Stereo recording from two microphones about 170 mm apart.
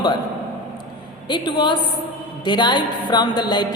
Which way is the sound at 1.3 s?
25° left (ahead or behind).